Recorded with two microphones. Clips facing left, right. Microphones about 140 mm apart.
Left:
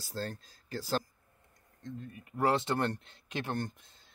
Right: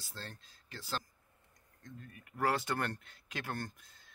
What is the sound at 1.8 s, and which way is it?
Speech, 25° left (ahead or behind).